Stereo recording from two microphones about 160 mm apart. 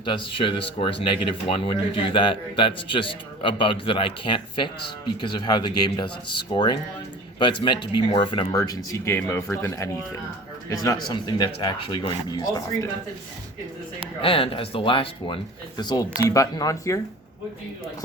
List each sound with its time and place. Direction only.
0.0 s speech: 30° left (ahead or behind)
14.2 s speech: 35° left (ahead or behind)